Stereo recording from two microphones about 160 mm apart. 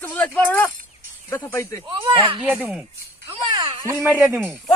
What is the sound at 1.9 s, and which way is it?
Speech, 35° right (ahead or behind).